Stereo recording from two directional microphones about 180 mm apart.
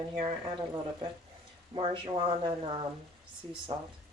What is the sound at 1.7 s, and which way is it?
Speech, 30° right (ahead or behind).